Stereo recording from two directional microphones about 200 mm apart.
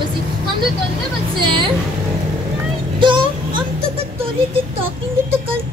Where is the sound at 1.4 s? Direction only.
25° right (ahead or behind).